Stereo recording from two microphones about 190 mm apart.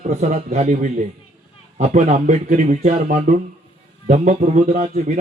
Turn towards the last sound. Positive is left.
turn(degrees=-45)  # may be behind; listen again after turning